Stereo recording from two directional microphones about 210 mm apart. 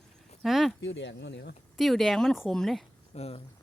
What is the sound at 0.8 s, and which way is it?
Speech, 60° left (ahead or behind).